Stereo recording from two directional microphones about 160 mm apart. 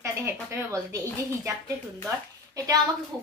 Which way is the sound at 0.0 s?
20° right (ahead or behind).